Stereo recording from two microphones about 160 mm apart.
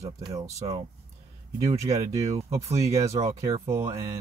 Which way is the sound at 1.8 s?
20° right (ahead or behind).